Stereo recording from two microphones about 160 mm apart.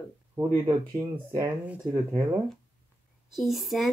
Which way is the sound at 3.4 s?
Centre (ahead or behind).